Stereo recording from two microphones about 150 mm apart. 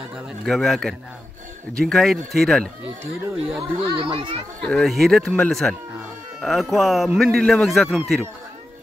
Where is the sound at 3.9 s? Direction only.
35° right (ahead or behind).